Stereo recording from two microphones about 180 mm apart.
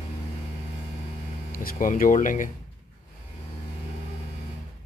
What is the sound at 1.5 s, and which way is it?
Speech, 50° left (ahead or behind).